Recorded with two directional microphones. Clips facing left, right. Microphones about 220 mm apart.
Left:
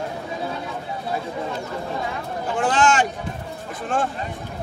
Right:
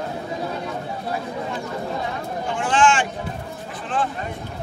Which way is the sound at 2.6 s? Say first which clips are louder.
Even; 40° left (ahead or behind).